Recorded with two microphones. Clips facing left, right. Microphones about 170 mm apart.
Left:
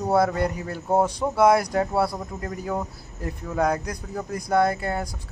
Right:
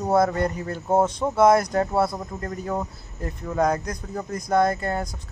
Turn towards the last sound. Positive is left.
turn(degrees=10)  # may be behind; listen again after turning